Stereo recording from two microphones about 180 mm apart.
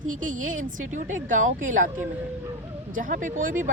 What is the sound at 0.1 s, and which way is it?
Speech, 45° right (ahead or behind).